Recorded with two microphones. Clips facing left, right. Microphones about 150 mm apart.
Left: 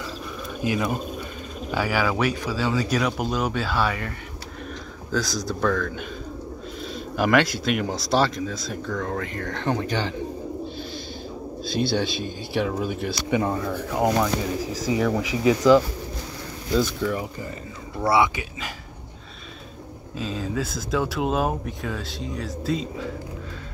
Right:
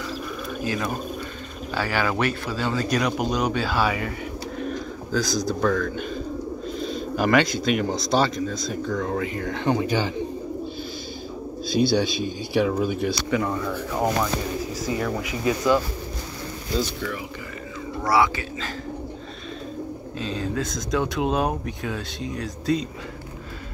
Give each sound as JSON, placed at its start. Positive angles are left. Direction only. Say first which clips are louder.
{"t": 0.7, "sound": "speech", "louder": "left 3 dB", "side_deg": 15}
{"t": 5.1, "sound": "speech", "louder": "right 2 dB", "side_deg": 0}
{"t": 11.6, "sound": "speech", "louder": "right 3 dB", "side_deg": 0}
{"t": 13.3, "sound": "speech", "louder": "left 1 dB", "side_deg": 35}
{"t": 14.2, "sound": "speech", "louder": "left 1 dB", "side_deg": 90}
{"t": 18.0, "sound": "speech", "louder": "left 1 dB", "side_deg": 20}
{"t": 20.2, "sound": "speech", "louder": "even", "side_deg": 0}